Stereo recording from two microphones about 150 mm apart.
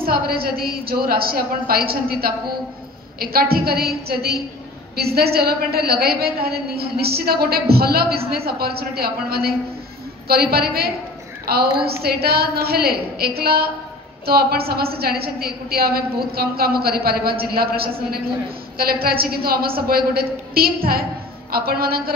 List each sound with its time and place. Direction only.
0.0 s a woman's voice: 90° right
18.8 s a woman's voice: 90° right